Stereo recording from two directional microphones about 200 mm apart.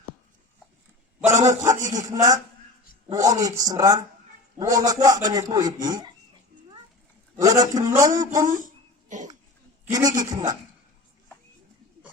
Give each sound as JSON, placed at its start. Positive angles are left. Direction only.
{"t": 1.3, "sound": "a man's voice", "side_deg": -15}
{"t": 7.3, "sound": "a man's voice", "side_deg": -20}
{"t": 8.4, "sound": "a sound", "side_deg": -40}
{"t": 10.2, "sound": "a man's voice", "side_deg": -20}